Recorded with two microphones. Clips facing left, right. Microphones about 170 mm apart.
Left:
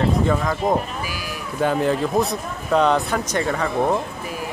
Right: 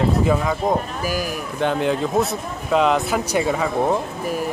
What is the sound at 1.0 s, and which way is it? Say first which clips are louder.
Sheep: right 7 dB; 45° right (ahead or behind).